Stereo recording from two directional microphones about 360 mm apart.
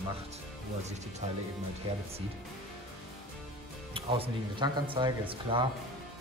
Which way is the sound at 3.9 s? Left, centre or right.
Centre.